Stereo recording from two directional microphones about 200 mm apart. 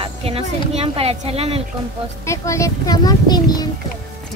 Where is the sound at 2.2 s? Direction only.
15° left (ahead or behind).